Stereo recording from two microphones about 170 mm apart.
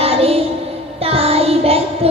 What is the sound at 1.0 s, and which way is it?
Child singing, 35° right (ahead or behind).